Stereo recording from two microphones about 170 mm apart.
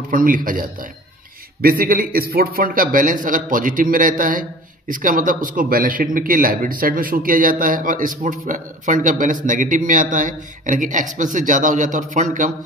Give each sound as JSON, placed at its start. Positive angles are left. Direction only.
{"t": 0.1, "sound": "a man's voice", "side_deg": -55}